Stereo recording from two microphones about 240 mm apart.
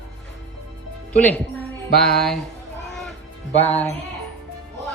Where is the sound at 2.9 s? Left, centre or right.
Centre.